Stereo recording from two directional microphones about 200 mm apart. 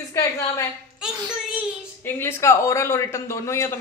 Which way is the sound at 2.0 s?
10° left (ahead or behind).